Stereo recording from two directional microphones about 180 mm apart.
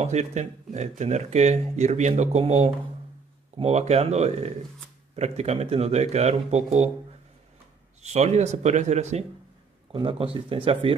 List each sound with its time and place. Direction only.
0.0 s speech: 40° right (ahead or behind)
8.0 s speech: 40° right (ahead or behind)
9.9 s speech: 30° right (ahead or behind)